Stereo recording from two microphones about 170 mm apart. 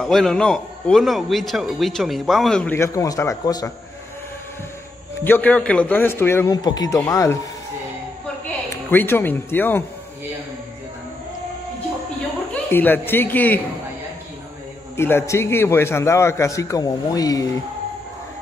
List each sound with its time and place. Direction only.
0.0 s a man's voice: centre (ahead or behind); by 3.7 s 20° left (ahead or behind)
5.2 s a man's voice: 10° left (ahead or behind)
8.5 s speech: 10° left (ahead or behind)
12.7 s a man's voice: 10° left (ahead or behind)
15.0 s a man's voice: 15° left (ahead or behind)